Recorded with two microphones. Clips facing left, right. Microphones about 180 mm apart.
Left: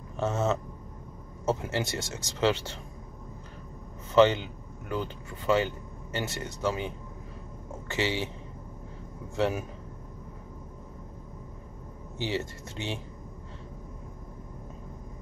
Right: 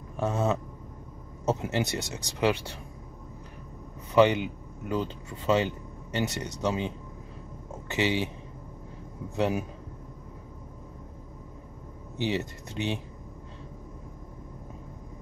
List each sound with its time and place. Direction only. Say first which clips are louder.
0.2 s speech: even; 15° right (ahead or behind)
4.1 s speech: even; 15° right (ahead or behind)
7.9 s speech: right 3 dB; 15° right (ahead or behind)
9.3 s speech: right 1 dB; 15° right (ahead or behind)
12.2 s speech: right 2 dB; 15° right (ahead or behind)